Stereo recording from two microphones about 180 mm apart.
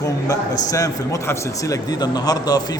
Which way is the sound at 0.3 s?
20° left (ahead or behind).